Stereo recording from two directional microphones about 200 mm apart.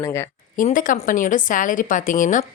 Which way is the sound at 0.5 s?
40° left (ahead or behind).